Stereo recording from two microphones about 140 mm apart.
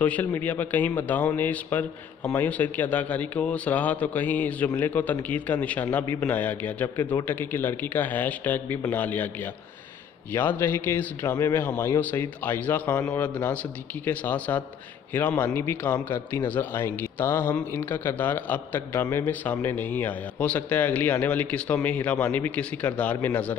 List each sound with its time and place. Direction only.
0.0 s speech: 10° left (ahead or behind)